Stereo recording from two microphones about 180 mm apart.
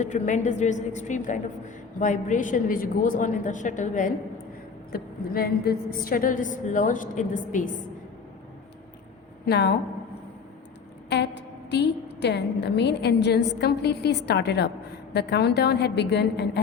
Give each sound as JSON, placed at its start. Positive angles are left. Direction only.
{"t": 0.0, "sound": "a woman's voice", "side_deg": 40}
{"t": 4.9, "sound": "a woman's voice", "side_deg": 55}
{"t": 9.5, "sound": "a woman's voice", "side_deg": 65}
{"t": 11.1, "sound": "a woman's voice", "side_deg": 70}